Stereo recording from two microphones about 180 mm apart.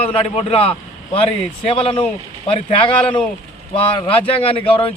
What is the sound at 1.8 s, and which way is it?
A man's voice, 30° left (ahead or behind).